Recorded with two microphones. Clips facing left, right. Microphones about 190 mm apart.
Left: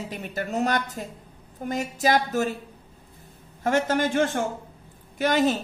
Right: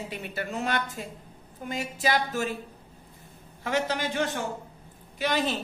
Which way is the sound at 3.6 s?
50° left (ahead or behind).